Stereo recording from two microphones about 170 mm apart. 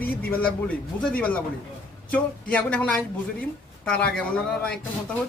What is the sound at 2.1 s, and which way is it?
A man's voice, 5° left (ahead or behind).